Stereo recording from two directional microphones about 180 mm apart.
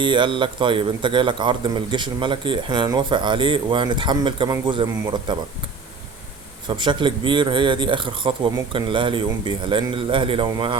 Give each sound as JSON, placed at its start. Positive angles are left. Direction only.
{"t": 0.0, "sound": "speech", "side_deg": -25}
{"t": 6.7, "sound": "speech", "side_deg": -25}